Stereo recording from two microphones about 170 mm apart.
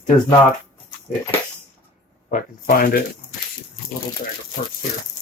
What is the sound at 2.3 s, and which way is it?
Speech, 55° left (ahead or behind).